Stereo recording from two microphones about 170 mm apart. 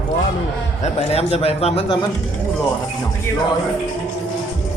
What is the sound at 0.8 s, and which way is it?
A man's voice, 40° left (ahead or behind).